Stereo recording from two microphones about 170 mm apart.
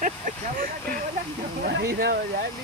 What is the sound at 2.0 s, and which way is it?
Speech, 70° right (ahead or behind).